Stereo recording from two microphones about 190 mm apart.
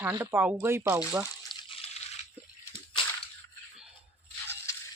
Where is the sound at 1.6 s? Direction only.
30° left (ahead or behind).